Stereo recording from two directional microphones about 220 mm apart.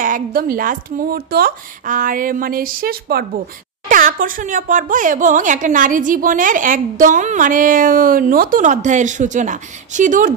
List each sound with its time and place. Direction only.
0.0 s speech: 40° right (ahead or behind)